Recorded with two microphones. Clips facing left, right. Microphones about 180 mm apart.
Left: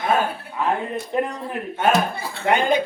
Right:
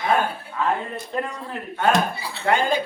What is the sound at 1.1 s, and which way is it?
Speech, 15° left (ahead or behind).